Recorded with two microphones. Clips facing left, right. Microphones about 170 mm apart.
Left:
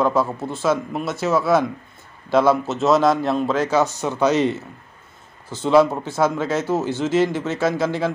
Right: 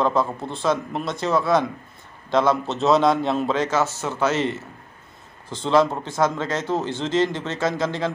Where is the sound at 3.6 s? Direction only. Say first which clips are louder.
Left 3 dB; 15° left (ahead or behind).